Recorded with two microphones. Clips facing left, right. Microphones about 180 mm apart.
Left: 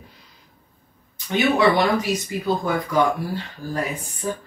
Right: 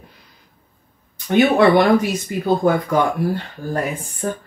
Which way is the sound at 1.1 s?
55° right (ahead or behind).